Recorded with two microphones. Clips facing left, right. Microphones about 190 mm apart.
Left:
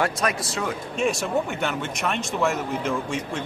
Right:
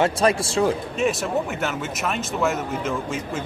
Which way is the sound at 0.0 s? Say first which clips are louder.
Right 5 dB; 30° right (ahead or behind).